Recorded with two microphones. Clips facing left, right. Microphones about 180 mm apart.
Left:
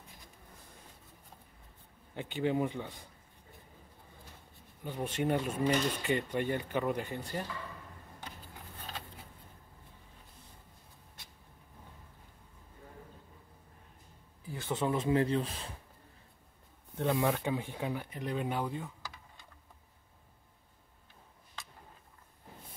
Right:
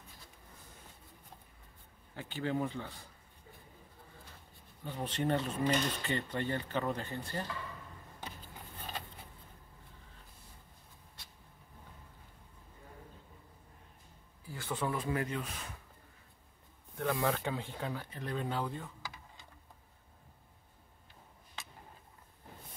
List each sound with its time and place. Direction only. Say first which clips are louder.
2.1 s speech: left 4 dB; 20° left (ahead or behind)
4.8 s speech: left 2 dB; 10° left (ahead or behind)
14.4 s speech: left 3 dB; 20° left (ahead or behind)
16.9 s speech: left 3 dB; 25° left (ahead or behind)